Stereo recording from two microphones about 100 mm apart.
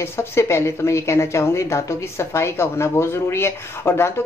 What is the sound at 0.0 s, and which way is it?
Speech, 25° left (ahead or behind).